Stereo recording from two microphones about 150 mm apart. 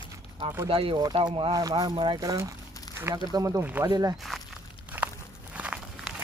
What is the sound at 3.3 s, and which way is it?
Speech, 25° right (ahead or behind).